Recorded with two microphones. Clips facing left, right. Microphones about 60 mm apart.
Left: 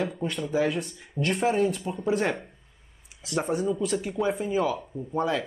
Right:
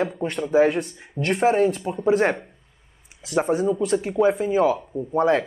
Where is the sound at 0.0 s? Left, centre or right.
Right.